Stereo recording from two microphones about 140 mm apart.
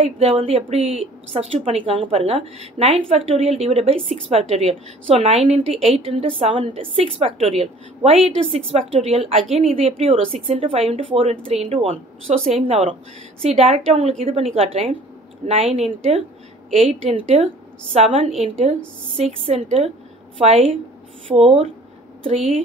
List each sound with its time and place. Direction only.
0.0 s a woman's voice: 45° right (ahead or behind)